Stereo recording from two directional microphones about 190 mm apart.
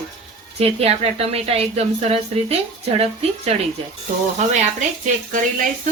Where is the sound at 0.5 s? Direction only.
30° right (ahead or behind).